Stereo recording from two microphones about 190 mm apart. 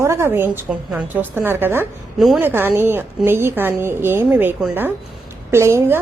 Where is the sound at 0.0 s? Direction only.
15° right (ahead or behind).